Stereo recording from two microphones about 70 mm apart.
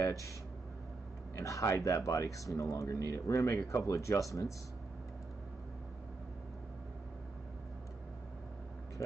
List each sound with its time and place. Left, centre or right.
0.0 s speech: left
1.3 s speech: left